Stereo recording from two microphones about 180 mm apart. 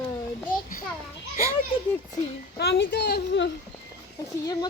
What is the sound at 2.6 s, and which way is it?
Speech, 80° left.